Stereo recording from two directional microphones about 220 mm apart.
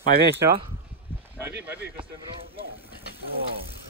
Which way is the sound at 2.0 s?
25° right (ahead or behind).